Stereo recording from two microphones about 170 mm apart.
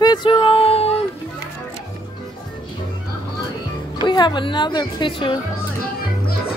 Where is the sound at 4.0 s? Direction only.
25° left (ahead or behind).